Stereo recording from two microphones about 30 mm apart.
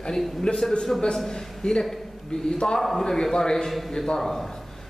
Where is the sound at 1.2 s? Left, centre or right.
Left.